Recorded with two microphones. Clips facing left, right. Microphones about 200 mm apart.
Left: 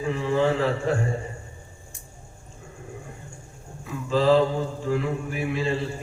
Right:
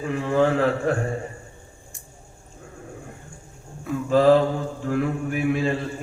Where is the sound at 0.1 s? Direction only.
55° right (ahead or behind).